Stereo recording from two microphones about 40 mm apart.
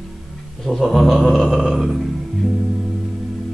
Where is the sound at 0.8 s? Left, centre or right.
Centre.